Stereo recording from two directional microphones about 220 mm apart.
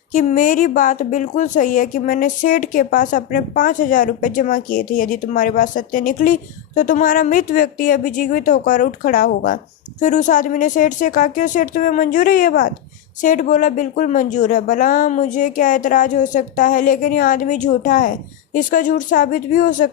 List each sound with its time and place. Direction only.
0.1 s speech: 35° left (ahead or behind)